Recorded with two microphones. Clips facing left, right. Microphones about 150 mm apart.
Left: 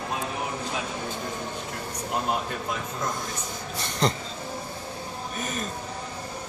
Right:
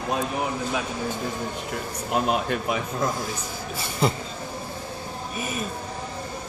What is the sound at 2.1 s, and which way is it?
Speech, 85° right.